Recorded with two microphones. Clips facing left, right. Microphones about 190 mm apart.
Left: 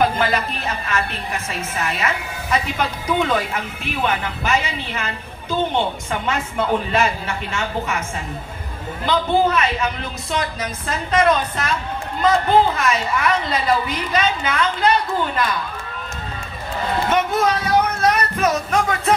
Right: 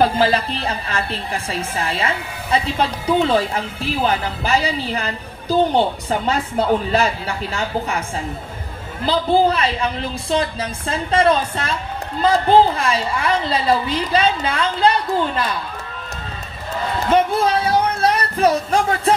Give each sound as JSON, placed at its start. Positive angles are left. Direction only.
{"t": 0.0, "sound": "a woman's voice", "side_deg": -30}
{"t": 9.0, "sound": "a woman's voice", "side_deg": -35}
{"t": 17.1, "sound": "speech", "side_deg": -30}